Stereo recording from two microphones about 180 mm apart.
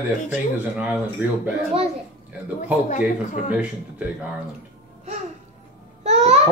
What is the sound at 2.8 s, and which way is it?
Speech, 45° left (ahead or behind).